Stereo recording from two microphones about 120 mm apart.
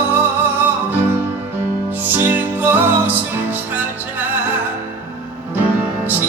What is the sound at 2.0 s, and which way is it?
Music, 15° right (ahead or behind).